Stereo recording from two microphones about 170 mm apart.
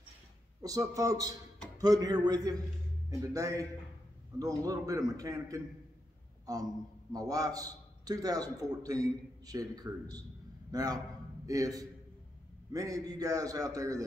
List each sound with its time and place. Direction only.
0.6 s a man's voice: 20° right (ahead or behind)